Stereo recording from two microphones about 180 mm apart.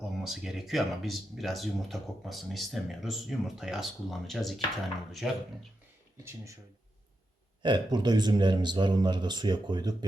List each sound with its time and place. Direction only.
0.2 s speech: centre (ahead or behind)
7.6 s speech: 25° right (ahead or behind)